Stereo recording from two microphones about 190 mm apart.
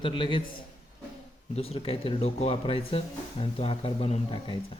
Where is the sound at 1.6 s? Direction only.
30° left (ahead or behind).